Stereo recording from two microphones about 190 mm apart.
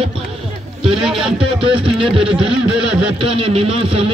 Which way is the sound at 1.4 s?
30° right (ahead or behind).